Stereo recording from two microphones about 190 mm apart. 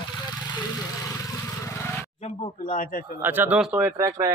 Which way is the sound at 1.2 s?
15° left (ahead or behind).